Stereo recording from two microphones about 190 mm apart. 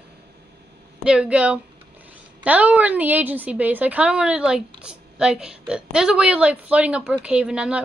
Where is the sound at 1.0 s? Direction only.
5° right (ahead or behind).